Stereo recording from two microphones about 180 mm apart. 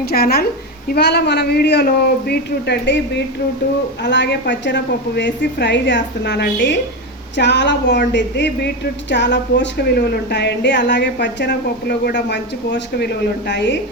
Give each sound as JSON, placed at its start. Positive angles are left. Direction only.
{"t": 0.0, "sound": "speech", "side_deg": 60}
{"t": 4.0, "sound": "speech", "side_deg": 75}